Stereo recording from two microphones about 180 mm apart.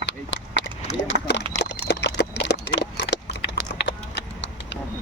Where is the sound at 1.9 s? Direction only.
75° left (ahead or behind).